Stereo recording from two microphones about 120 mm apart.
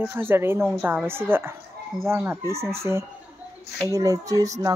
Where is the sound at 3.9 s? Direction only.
30° right (ahead or behind).